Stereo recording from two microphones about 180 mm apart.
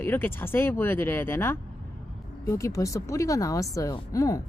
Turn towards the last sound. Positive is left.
turn(degrees=15)  # may be behind; listen again after turning